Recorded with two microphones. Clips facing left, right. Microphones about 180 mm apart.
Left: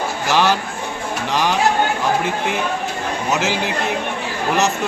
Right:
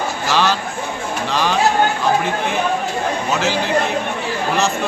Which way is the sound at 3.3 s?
15° left (ahead or behind).